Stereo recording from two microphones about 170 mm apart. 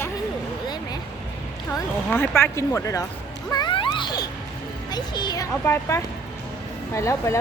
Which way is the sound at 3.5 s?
25° left (ahead or behind).